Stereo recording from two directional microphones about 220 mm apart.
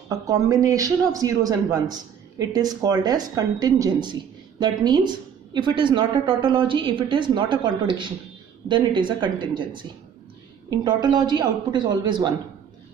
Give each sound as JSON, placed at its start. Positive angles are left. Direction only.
{"t": 0.1, "sound": "a man's voice", "side_deg": -15}